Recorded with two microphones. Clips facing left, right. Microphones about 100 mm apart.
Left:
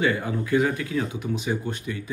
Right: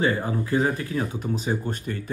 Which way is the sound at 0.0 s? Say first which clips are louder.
Even; 35° right (ahead or behind).